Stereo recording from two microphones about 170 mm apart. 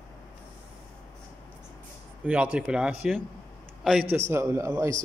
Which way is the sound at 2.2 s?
5° right (ahead or behind).